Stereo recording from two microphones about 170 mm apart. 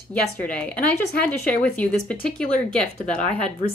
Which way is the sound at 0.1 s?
10° left (ahead or behind).